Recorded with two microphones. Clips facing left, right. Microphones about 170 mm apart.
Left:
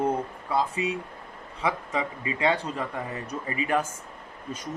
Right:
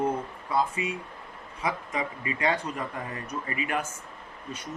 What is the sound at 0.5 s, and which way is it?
Speech, 35° left (ahead or behind).